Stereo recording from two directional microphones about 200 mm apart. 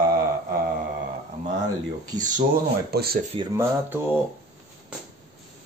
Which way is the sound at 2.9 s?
50° right (ahead or behind).